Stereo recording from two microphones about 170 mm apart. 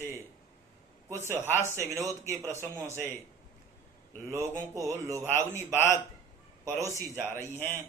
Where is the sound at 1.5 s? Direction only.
15° left (ahead or behind).